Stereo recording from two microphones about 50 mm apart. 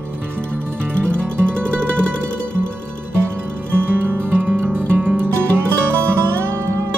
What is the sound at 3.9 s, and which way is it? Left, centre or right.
Music, right.